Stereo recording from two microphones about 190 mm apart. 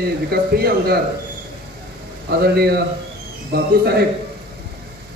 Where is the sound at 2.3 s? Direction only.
55° right (ahead or behind).